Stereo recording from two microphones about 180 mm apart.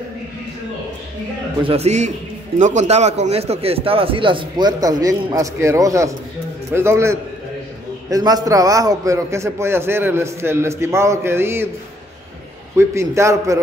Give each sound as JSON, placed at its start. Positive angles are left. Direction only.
{"t": 1.6, "sound": "a man's voice", "side_deg": -35}
{"t": 12.7, "sound": "a man's voice", "side_deg": -15}